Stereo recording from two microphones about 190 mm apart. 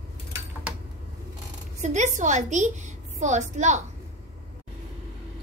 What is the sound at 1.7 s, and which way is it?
A woman's voice, 40° right (ahead or behind).